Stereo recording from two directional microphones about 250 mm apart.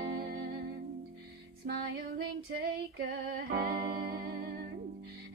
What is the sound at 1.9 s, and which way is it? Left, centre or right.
Music, right.